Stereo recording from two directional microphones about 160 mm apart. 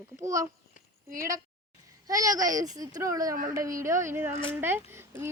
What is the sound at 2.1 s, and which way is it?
Speech, 20° right (ahead or behind).